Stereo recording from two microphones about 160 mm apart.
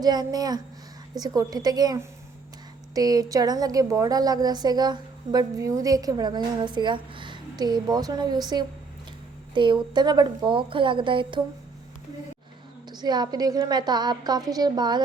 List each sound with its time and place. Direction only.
0.0 s a woman's voice: 25° right (ahead or behind)
12.9 s a woman's voice: 25° right (ahead or behind)